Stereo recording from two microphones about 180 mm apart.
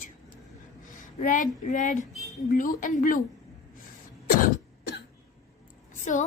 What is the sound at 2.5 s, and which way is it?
Speech, 50° left (ahead or behind).